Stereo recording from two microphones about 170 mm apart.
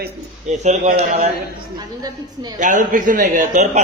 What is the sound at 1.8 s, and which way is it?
Speech, 25° right (ahead or behind).